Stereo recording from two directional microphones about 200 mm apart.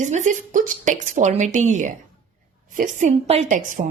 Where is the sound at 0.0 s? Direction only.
35° right (ahead or behind).